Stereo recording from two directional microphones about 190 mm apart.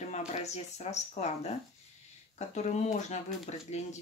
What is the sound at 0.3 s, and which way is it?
Speech, 35° left (ahead or behind).